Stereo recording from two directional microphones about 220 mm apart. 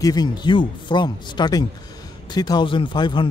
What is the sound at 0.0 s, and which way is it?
A man's voice, 15° left (ahead or behind).